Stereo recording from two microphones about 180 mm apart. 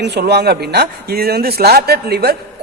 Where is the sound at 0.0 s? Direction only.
70° right (ahead or behind).